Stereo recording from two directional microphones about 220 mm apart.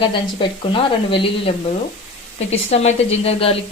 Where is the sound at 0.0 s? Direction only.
20° left (ahead or behind).